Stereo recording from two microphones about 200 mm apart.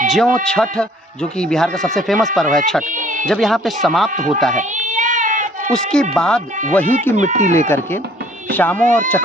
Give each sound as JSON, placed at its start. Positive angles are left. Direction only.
{"t": 0.1, "sound": "speech", "side_deg": 0}
{"t": 2.9, "sound": "a sound", "side_deg": -40}
{"t": 3.2, "sound": "speech", "side_deg": 0}
{"t": 4.5, "sound": "baby cry", "side_deg": -40}
{"t": 5.7, "sound": "speech", "side_deg": 5}
{"t": 7.2, "sound": "speech", "side_deg": -35}
{"t": 8.4, "sound": "speech", "side_deg": 10}